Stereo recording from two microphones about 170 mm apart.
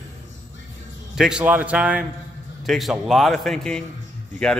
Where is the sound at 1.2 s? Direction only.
5° right (ahead or behind).